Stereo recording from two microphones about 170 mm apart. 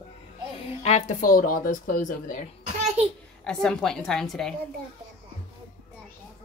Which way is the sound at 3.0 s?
40° right (ahead or behind).